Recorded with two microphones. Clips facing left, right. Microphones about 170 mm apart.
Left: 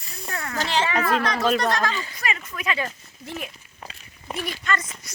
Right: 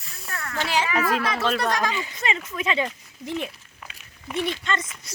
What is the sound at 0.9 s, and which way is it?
Speech, 5° right (ahead or behind).